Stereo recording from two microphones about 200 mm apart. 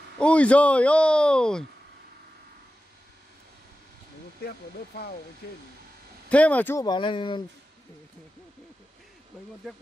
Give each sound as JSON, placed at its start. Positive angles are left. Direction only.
{"t": 0.2, "sound": "speech", "side_deg": 5}
{"t": 4.5, "sound": "speech", "side_deg": 50}
{"t": 6.2, "sound": "speech", "side_deg": 5}